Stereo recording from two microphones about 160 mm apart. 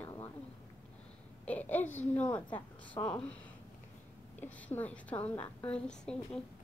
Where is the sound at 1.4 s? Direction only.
10° left (ahead or behind).